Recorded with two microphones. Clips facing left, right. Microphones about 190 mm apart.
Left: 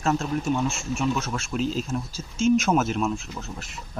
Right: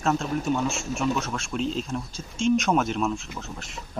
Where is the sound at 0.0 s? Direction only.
Centre (ahead or behind).